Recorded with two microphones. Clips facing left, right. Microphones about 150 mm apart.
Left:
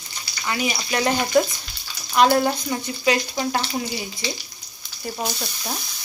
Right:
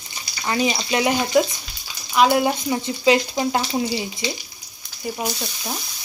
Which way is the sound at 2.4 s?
15° right (ahead or behind).